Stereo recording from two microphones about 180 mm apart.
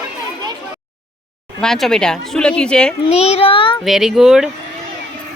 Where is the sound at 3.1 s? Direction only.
35° left (ahead or behind).